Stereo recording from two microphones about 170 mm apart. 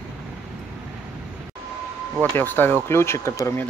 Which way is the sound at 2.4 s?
10° left (ahead or behind).